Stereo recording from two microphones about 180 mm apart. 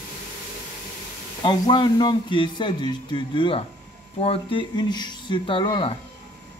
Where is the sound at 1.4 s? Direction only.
25° left (ahead or behind).